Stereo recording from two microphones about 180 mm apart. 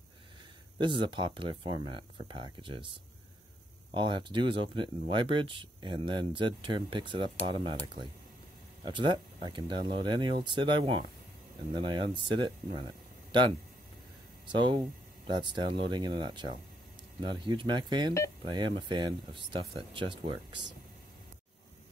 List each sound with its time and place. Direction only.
0.7 s speech: 25° right (ahead or behind)
3.9 s speech: 25° right (ahead or behind)
14.5 s speech: 25° right (ahead or behind)